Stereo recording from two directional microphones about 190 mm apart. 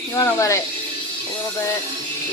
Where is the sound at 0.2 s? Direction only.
15° left (ahead or behind).